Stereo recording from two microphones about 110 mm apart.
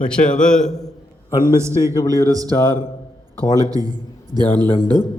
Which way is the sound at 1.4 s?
25° right (ahead or behind).